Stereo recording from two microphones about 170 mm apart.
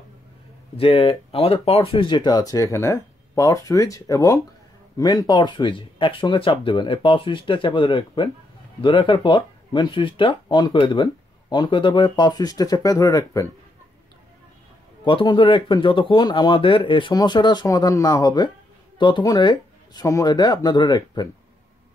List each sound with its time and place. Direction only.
0.7 s speech: 35° left (ahead or behind)
15.0 s speech: 30° left (ahead or behind)